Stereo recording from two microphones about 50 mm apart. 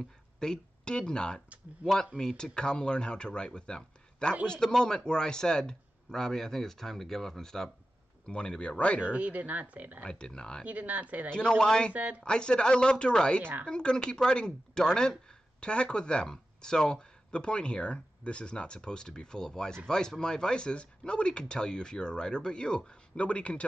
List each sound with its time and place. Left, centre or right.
0.0 s a man's voice: centre
9.0 s speech: right
10.0 s speech: centre
10.6 s speech: right
11.3 s a man's voice: centre
11.9 s speech: right
12.2 s a man's voice: centre
13.4 s speech: right
13.7 s a man's voice: centre